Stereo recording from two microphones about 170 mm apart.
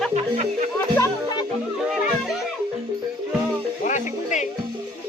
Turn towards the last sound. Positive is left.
turn(degrees=45)  # may be behind; listen again after turning